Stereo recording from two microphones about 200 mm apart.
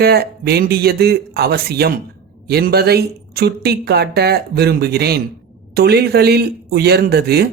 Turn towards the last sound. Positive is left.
turn(degrees=-50)  # may be behind; listen again after turning